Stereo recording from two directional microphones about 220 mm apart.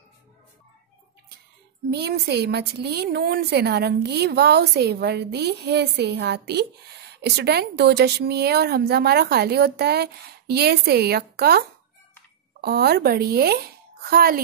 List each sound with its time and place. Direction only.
1.9 s speech: 50° right (ahead or behind)